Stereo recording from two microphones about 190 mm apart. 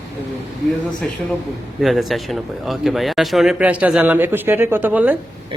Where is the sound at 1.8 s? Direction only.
Centre (ahead or behind).